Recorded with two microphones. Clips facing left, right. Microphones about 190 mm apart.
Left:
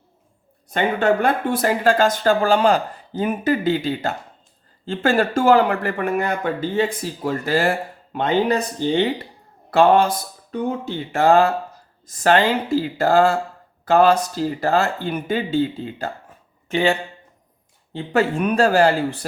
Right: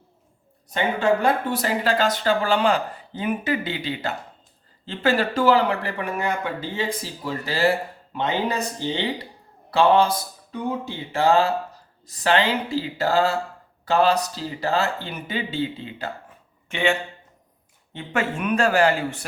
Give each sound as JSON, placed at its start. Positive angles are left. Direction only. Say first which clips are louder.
{"t": 0.7, "sound": "speech", "louder": "left 3 dB", "side_deg": 55}
{"t": 11.1, "sound": "speech", "louder": "left 4 dB", "side_deg": 50}